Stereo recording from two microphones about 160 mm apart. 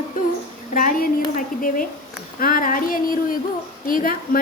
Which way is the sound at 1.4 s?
60° left (ahead or behind).